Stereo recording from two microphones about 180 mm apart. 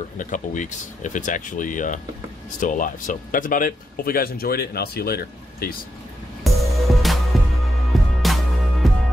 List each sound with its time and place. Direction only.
0.2 s speech: 45° left (ahead or behind)
6.4 s music: centre (ahead or behind)